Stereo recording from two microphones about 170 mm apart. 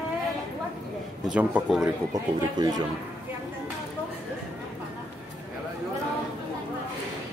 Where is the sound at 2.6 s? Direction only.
25° right (ahead or behind).